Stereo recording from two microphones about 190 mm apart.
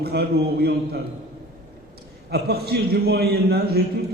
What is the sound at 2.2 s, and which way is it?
A man's voice, 55° right (ahead or behind).